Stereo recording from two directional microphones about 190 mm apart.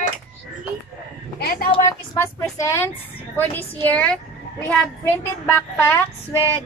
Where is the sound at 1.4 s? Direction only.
55° left (ahead or behind).